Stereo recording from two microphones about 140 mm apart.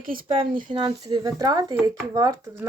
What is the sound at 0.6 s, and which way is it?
Speech, 35° right (ahead or behind).